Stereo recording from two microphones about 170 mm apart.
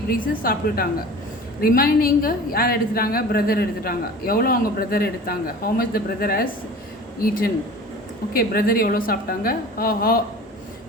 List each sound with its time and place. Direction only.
0.1 s a woman's voice: 60° left (ahead or behind)